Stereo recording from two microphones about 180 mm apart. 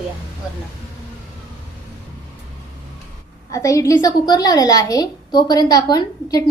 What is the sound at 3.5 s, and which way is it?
A woman's voice, 15° left (ahead or behind).